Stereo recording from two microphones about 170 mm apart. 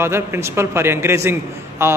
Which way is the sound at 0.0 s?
15° right (ahead or behind).